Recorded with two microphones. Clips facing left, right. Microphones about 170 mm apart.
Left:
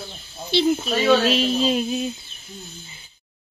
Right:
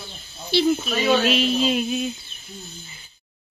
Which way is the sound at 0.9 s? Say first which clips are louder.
Left 2 dB; 35° left (ahead or behind).